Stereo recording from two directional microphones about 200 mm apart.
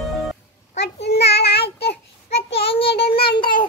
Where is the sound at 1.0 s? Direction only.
55° left (ahead or behind).